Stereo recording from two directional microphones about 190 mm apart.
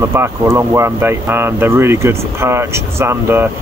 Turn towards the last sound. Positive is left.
turn(degrees=-10)  # may be behind; listen again after turning